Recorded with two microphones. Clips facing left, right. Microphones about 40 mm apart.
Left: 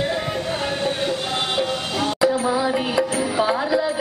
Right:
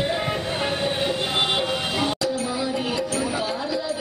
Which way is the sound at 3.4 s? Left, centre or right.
Left.